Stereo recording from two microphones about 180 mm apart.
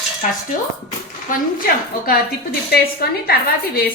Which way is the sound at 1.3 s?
50° left (ahead or behind).